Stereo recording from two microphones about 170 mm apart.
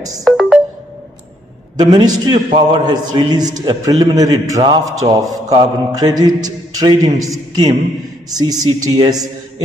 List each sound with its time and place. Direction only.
0.2 s music: centre (ahead or behind)
1.8 s a man's voice: 25° right (ahead or behind)